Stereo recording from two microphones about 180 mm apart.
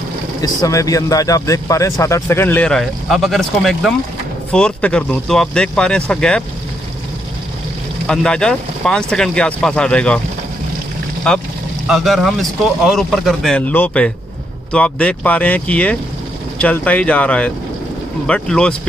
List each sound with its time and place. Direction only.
0.4 s speech: 20° left (ahead or behind)
8.1 s speech: 5° left (ahead or behind)
11.3 s speech: 5° left (ahead or behind)